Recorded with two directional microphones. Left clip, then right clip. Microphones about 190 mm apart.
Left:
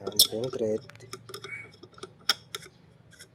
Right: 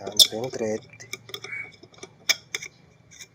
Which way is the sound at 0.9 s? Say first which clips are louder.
Right 6 dB; 15° left (ahead or behind).